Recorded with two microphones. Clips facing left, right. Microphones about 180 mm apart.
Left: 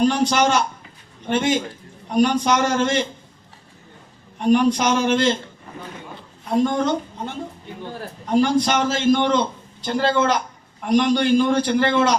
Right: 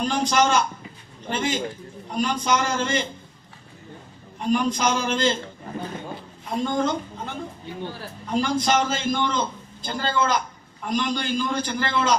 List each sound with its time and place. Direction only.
0.0 s a man's voice: 70° left (ahead or behind)
4.4 s a man's voice: 75° left (ahead or behind)
6.6 s a man's voice: 75° left (ahead or behind)
8.3 s a man's voice: 75° left (ahead or behind)